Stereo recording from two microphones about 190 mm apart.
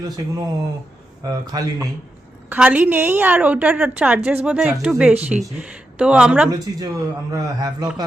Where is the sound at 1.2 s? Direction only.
20° right (ahead or behind).